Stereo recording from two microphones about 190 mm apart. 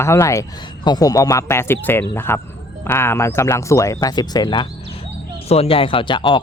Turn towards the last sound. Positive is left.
turn(degrees=25)  # may be behind; listen again after turning